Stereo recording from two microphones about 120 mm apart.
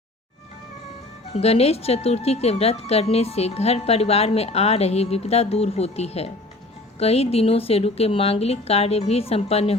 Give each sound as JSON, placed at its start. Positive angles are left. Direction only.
{"t": 1.3, "sound": "speech", "side_deg": 60}